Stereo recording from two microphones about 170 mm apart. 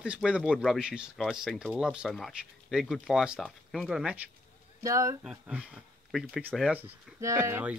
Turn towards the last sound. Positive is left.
turn(degrees=-15)  # may be behind; listen again after turning